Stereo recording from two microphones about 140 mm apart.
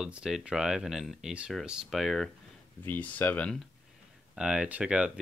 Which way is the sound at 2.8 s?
15° left (ahead or behind).